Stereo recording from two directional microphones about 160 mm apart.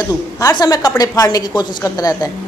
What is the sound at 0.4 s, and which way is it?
A woman's voice, 25° left (ahead or behind).